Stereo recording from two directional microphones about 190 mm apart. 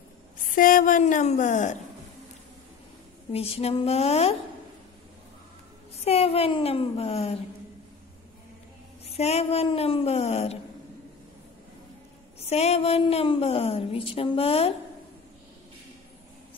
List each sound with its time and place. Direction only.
0.6 s a woman's voice: 45° left (ahead or behind)
3.3 s a woman's voice: 30° left (ahead or behind)
6.0 s a woman's voice: 30° left (ahead or behind)
9.0 s a woman's voice: 35° left (ahead or behind)
12.4 s a woman's voice: 35° left (ahead or behind)